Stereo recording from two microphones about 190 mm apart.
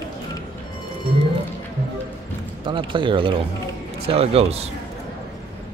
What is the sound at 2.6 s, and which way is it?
Speech, 25° right (ahead or behind).